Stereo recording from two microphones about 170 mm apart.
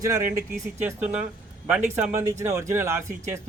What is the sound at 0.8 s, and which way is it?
Speech, 10° right (ahead or behind).